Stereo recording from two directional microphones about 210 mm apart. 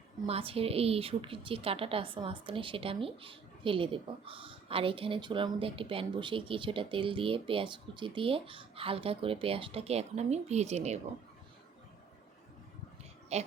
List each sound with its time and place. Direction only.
0.3 s a woman's voice: 25° right (ahead or behind)
13.3 s speech: 30° right (ahead or behind)